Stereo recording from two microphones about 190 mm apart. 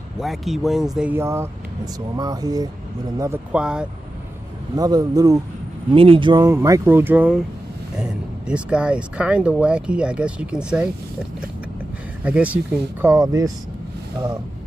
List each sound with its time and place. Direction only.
0.2 s speech: centre (ahead or behind)
4.7 s speech: 20° right (ahead or behind)
12.2 s speech: 5° right (ahead or behind)
13.0 s speech: 15° right (ahead or behind)